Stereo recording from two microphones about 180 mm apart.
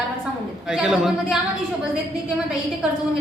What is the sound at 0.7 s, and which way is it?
Speech, 5° right (ahead or behind).